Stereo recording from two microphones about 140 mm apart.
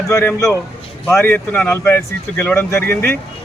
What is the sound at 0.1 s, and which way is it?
A man's voice, 20° left (ahead or behind).